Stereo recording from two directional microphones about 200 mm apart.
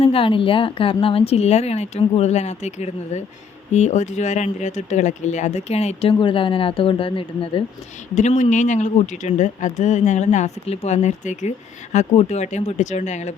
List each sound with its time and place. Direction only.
0.0 s speech: 25° left (ahead or behind)